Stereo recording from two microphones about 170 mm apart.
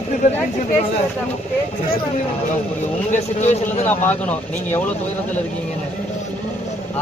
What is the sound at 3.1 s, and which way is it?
Speech, 45° left (ahead or behind).